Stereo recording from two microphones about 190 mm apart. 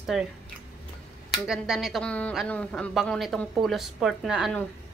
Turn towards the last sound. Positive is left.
turn(degrees=0)  # may be behind; listen again after turning